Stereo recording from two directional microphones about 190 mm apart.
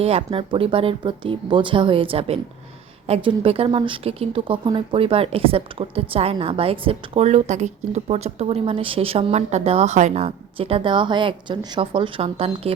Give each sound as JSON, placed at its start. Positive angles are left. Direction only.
{"t": 0.0, "sound": "speech", "side_deg": -30}